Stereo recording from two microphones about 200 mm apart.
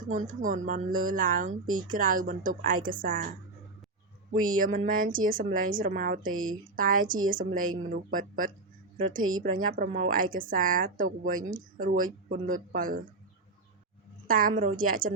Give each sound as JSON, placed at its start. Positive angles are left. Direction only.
{"t": 0.1, "sound": "a woman's voice", "side_deg": -40}
{"t": 4.4, "sound": "a woman's voice", "side_deg": -45}
{"t": 6.3, "sound": "speech", "side_deg": -90}
{"t": 6.7, "sound": "a woman's voice", "side_deg": -45}
{"t": 14.3, "sound": "a woman's voice", "side_deg": -45}